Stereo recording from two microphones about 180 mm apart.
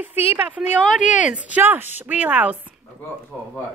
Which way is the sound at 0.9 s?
45° left (ahead or behind).